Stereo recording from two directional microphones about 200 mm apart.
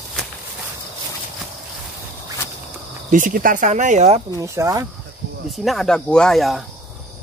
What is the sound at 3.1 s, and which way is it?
Speech, 45° right (ahead or behind).